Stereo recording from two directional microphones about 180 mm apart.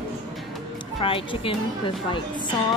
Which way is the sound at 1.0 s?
30° left (ahead or behind).